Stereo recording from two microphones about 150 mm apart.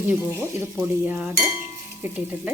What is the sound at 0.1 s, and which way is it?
Stir, 15° right (ahead or behind).